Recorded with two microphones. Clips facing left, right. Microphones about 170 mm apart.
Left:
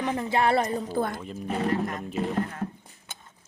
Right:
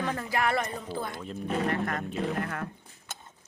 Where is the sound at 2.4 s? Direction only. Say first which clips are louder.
Left 1 dB; 65° right (ahead or behind).